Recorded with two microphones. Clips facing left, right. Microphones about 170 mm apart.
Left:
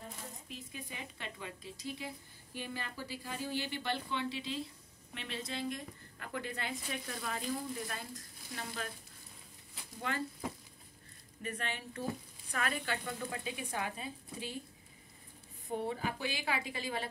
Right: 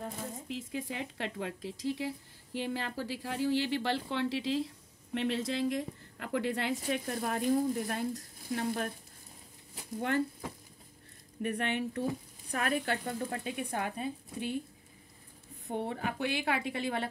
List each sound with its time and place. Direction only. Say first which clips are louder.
0.0 s a woman's voice: right 8 dB; 85° right
6.9 s a woman's voice: right 8 dB; 55° right (ahead or behind)
9.9 s speech: right 8 dB; 60° right (ahead or behind)
11.4 s speech: right 9 dB; 60° right (ahead or behind)
12.4 s a woman's voice: right 5 dB; 50° right (ahead or behind)
15.9 s speech: right 4 dB; 60° right (ahead or behind)